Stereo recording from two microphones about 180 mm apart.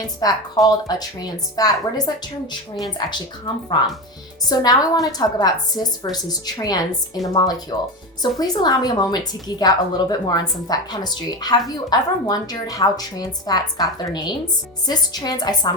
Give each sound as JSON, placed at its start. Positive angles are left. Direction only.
{"t": 0.2, "sound": "a woman's voice", "side_deg": 20}